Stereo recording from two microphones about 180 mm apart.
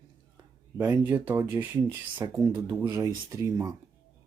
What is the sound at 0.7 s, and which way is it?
Speech, 10° right (ahead or behind).